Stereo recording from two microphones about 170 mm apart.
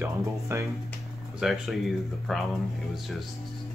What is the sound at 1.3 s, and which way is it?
Speech, centre (ahead or behind).